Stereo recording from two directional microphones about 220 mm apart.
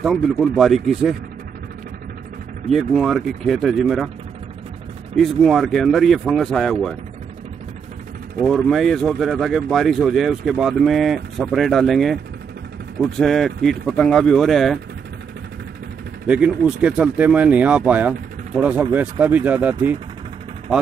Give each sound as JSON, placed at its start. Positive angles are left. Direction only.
{"t": 0.0, "sound": "speech", "side_deg": 0}
{"t": 2.7, "sound": "speech", "side_deg": 0}
{"t": 5.1, "sound": "speech", "side_deg": 0}
{"t": 8.4, "sound": "speech", "side_deg": 5}
{"t": 13.2, "sound": "speech", "side_deg": 0}
{"t": 16.3, "sound": "speech", "side_deg": -5}